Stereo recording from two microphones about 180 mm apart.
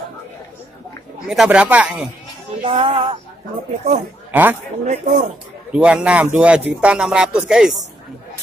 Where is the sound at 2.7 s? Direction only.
30° right (ahead or behind).